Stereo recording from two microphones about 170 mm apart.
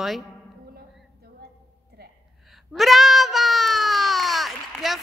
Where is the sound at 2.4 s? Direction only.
Centre (ahead or behind).